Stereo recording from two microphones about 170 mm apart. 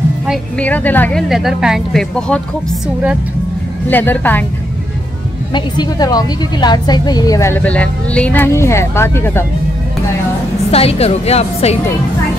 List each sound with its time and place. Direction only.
0.3 s a woman's voice: 10° left (ahead or behind)
1.3 s speech: centre (ahead or behind)
3.9 s a woman's voice: 10° left (ahead or behind)
5.5 s a woman's voice: 25° left (ahead or behind)
10.7 s a woman's voice: 35° left (ahead or behind)